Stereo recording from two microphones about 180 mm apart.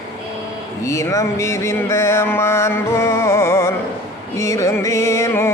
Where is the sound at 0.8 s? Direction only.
15° left (ahead or behind).